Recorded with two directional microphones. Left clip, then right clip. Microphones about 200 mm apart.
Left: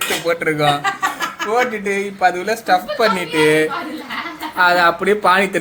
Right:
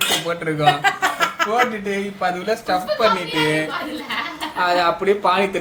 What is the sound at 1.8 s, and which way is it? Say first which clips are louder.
A man's voice: left 5 dB; 20° left (ahead or behind).